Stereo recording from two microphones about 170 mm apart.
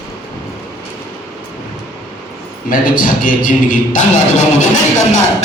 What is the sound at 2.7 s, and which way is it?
A man's voice, 55° left (ahead or behind).